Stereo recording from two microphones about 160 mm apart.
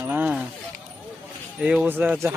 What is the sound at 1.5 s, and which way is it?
Speech, 5° right (ahead or behind).